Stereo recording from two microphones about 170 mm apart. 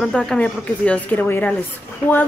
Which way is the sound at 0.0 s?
Centre (ahead or behind).